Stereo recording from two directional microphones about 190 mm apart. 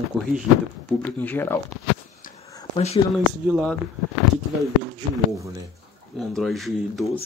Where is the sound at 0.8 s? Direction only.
10° left (ahead or behind).